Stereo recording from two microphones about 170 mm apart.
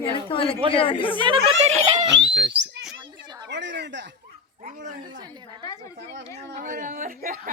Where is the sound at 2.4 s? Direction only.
90° right.